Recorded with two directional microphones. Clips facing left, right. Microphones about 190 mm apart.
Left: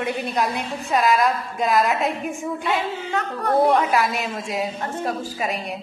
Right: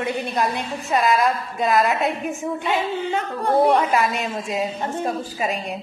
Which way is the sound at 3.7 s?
Centre (ahead or behind).